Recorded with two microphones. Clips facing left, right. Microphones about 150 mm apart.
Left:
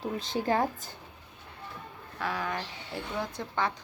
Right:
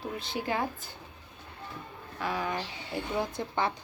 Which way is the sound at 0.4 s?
40° left (ahead or behind).